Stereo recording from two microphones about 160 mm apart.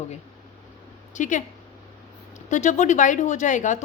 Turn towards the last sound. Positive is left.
turn(degrees=50)  # may be behind; listen again after turning